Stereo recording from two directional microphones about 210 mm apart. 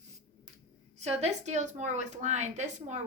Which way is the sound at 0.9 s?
30° right (ahead or behind).